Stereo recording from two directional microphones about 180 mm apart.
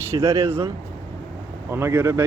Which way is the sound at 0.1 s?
15° right (ahead or behind).